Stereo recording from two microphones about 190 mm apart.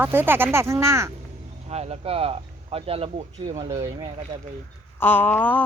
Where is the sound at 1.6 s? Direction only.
35° right (ahead or behind).